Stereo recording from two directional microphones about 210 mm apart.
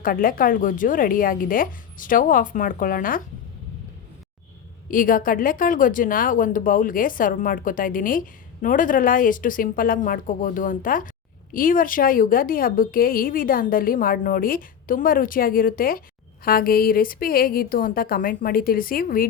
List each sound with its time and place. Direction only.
0.0 s a woman's voice: 40° left (ahead or behind)
4.9 s a woman's voice: 40° left (ahead or behind)